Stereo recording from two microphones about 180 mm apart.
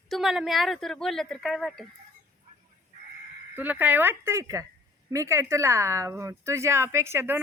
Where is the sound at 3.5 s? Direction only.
10° right (ahead or behind).